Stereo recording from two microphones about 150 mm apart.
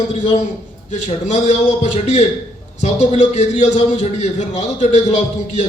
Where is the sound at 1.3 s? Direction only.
50° left (ahead or behind).